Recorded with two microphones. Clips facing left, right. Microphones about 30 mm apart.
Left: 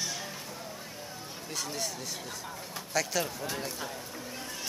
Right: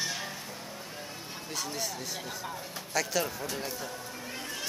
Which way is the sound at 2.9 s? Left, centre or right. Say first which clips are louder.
Right 1 dB; centre.